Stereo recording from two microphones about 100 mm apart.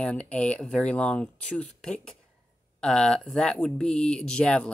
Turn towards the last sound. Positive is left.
turn(degrees=10)  # may be behind; listen again after turning